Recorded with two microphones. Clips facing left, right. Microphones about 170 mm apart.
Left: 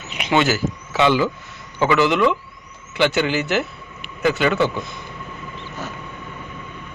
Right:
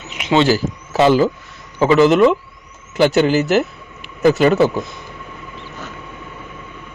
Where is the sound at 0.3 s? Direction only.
30° right (ahead or behind).